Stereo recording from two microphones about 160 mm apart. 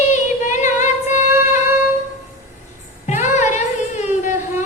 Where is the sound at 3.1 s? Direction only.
45° left (ahead or behind).